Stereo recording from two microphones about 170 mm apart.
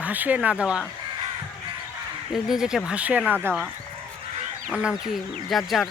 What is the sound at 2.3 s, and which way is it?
Speech, 5° right (ahead or behind).